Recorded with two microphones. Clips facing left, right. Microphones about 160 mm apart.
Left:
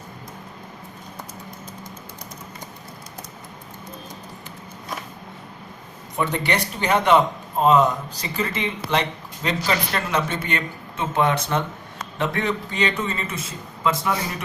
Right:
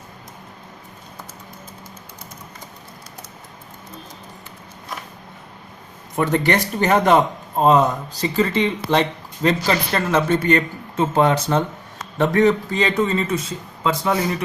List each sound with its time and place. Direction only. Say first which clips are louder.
6.1 s speech: right 5 dB; 45° right (ahead or behind); by 14.1 s 30° right (ahead or behind)